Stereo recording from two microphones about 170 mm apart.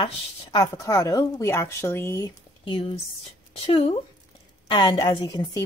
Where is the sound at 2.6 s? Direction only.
30° left (ahead or behind).